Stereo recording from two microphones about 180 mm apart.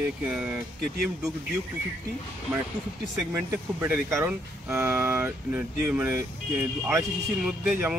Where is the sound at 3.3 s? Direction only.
15° right (ahead or behind).